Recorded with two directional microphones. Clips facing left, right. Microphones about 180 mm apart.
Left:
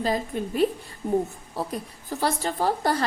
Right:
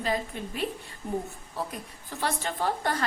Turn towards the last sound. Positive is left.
turn(degrees=35)  # may be behind; listen again after turning